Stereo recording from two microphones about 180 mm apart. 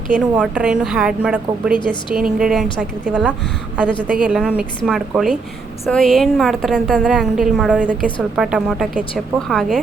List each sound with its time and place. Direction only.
0.1 s a woman's voice: 5° right (ahead or behind)
1.8 s a woman's voice: 25° left (ahead or behind)
2.2 s a woman's voice: 5° right (ahead or behind)